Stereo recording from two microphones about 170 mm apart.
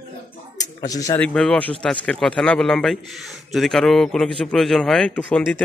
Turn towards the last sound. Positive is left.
turn(degrees=5)  # may be behind; listen again after turning